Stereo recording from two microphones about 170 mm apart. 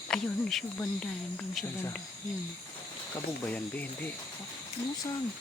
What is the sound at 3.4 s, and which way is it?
Speech, 10° left (ahead or behind).